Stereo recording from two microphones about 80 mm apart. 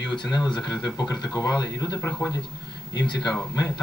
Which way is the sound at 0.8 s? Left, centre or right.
Left.